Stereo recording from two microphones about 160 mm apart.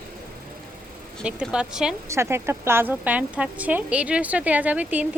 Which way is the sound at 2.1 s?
15° right (ahead or behind).